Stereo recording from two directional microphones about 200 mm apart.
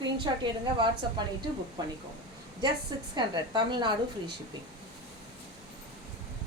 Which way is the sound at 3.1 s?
25° right (ahead or behind).